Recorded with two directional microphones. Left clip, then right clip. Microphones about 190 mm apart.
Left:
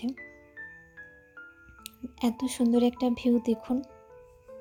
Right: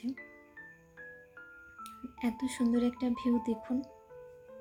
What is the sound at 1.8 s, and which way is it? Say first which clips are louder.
Speech: left 6 dB; 25° left (ahead or behind).